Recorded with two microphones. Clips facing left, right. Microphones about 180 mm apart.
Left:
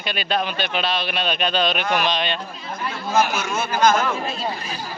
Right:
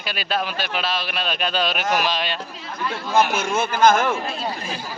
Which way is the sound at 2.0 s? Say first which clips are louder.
Left 2 dB; 5° right (ahead or behind).